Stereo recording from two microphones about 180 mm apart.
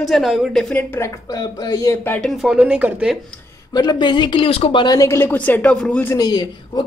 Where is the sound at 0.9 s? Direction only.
15° left (ahead or behind).